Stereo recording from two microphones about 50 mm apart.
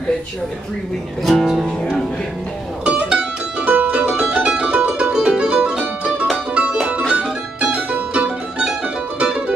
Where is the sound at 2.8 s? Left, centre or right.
Centre.